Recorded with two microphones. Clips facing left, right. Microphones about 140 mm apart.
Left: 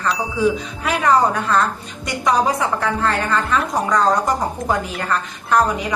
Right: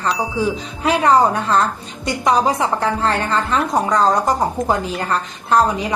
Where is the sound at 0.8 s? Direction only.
30° right (ahead or behind).